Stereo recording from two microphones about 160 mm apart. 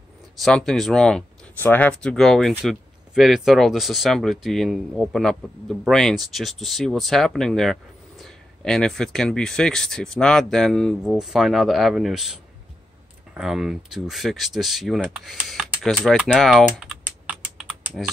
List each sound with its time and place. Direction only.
0.4 s speech: 5° left (ahead or behind)
16.6 s typing: 10° right (ahead or behind)